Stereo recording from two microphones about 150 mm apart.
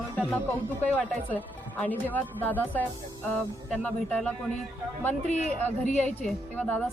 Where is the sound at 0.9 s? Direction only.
10° left (ahead or behind).